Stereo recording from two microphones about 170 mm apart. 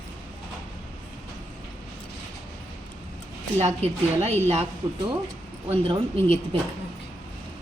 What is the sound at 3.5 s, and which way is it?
Speech, 40° right (ahead or behind).